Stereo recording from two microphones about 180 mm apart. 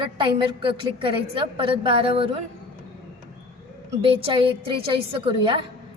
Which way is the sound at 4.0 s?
30° right (ahead or behind).